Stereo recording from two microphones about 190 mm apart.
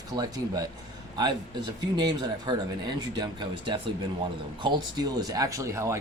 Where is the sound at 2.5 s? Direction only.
25° right (ahead or behind).